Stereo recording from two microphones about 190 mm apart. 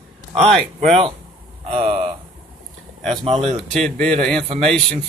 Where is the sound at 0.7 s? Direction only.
35° right (ahead or behind).